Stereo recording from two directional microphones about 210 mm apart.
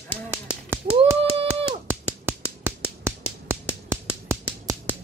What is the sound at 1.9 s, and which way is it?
Finger snapping, 10° right (ahead or behind).